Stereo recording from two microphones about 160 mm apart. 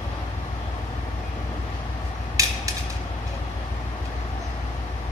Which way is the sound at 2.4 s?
20° right (ahead or behind).